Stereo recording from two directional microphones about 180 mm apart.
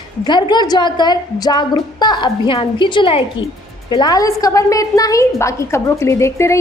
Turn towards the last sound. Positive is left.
turn(degrees=15)  # may be behind; listen again after turning